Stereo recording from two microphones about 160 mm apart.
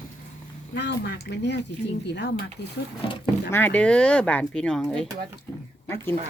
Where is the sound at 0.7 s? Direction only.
90° left.